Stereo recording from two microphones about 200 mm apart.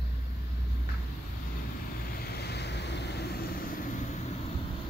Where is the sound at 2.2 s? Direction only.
55° left (ahead or behind).